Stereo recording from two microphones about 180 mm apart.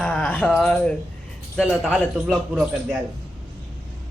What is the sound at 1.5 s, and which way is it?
Speech, 5° right (ahead or behind).